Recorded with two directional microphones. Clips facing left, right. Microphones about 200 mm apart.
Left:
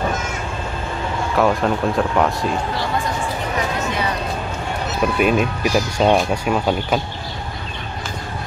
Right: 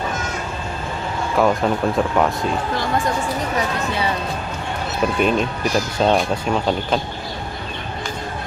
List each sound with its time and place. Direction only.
1.3 s speech: centre (ahead or behind)
5.2 s speech: 5° left (ahead or behind)